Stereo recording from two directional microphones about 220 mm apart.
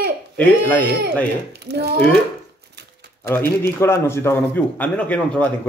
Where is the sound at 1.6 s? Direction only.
50° right (ahead or behind).